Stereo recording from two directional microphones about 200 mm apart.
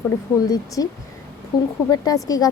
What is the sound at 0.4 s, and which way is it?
Speech, 20° left (ahead or behind).